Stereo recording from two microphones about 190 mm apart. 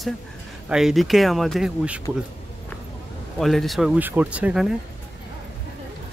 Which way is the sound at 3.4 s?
Centre (ahead or behind).